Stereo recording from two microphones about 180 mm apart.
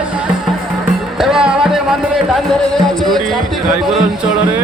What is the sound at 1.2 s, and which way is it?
Music, 5° right (ahead or behind).